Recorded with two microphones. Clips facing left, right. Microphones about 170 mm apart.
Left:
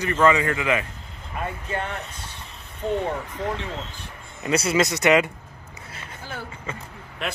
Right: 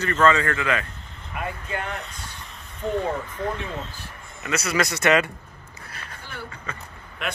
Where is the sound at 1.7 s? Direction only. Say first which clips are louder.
Left 1 dB; 30° left (ahead or behind).